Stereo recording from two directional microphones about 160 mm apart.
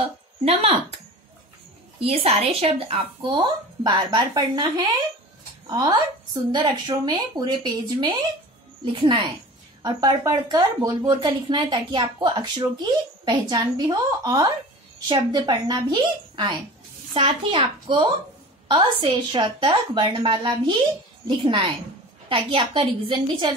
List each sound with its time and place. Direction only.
0.0 s speech: 40° right (ahead or behind)
2.0 s a woman's voice: 35° right (ahead or behind)